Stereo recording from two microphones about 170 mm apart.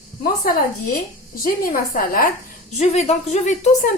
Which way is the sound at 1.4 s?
55° left (ahead or behind).